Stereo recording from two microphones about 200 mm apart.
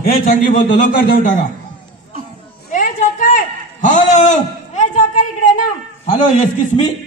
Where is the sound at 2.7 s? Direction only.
45° left (ahead or behind).